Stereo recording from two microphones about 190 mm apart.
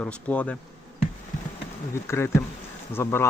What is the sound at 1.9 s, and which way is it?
Speech, 15° left (ahead or behind).